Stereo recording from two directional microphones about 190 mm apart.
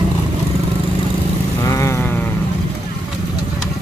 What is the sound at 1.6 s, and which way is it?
Vehicle, 15° left (ahead or behind).